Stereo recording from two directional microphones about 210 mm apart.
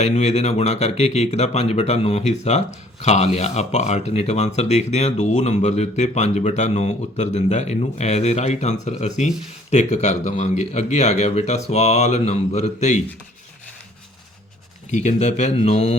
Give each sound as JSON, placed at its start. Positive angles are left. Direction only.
{"t": 0.0, "sound": "speech", "side_deg": 30}
{"t": 14.8, "sound": "speech", "side_deg": 35}